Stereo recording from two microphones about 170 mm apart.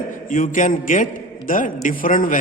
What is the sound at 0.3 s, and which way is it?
A man's voice, 50° left (ahead or behind).